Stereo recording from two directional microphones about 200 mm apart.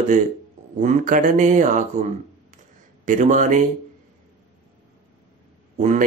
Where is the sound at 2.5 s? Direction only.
40° right (ahead or behind).